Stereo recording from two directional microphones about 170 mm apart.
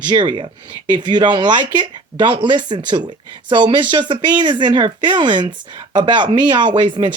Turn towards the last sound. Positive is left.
turn(degrees=-30)  # may be behind; listen again after turning